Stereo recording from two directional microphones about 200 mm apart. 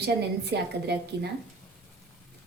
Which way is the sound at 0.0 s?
55° right (ahead or behind).